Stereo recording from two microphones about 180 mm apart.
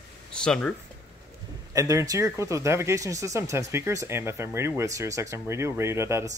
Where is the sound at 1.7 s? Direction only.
20° right (ahead or behind).